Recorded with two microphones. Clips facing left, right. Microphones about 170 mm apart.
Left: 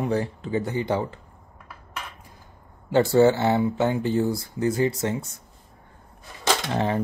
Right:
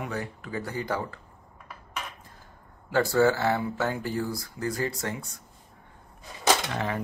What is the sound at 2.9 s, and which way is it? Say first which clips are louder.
Speech: left 5 dB; 25° left (ahead or behind).